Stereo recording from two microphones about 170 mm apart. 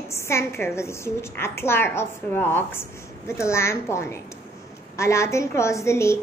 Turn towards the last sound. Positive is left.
turn(degrees=15)  # may be behind; listen again after turning